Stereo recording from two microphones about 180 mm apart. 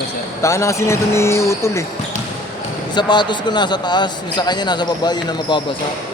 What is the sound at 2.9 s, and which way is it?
A man's voice, 25° left (ahead or behind).